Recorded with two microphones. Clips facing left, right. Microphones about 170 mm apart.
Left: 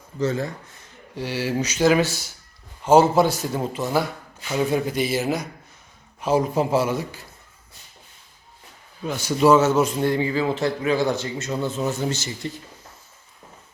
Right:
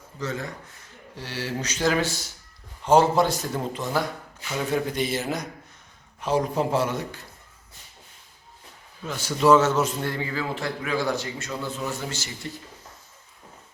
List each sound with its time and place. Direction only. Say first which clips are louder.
0.2 s a man's voice: left 7 dB; 30° left (ahead or behind)
1.1 s a man's voice: left 6 dB; 15° left (ahead or behind)
9.0 s a man's voice: left 2 dB; 15° left (ahead or behind)